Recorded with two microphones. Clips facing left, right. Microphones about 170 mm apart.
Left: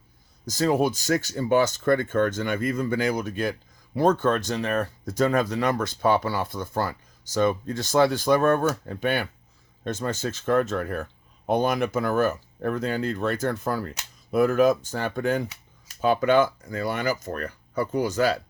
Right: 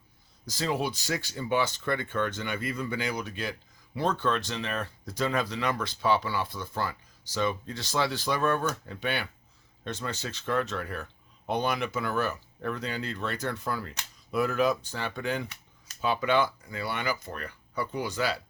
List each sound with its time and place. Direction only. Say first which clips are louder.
0.4 s speech: left 8 dB; 45° left (ahead or behind)